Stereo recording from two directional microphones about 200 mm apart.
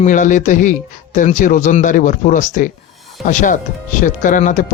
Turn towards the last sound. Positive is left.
turn(degrees=40)  # may be behind; listen again after turning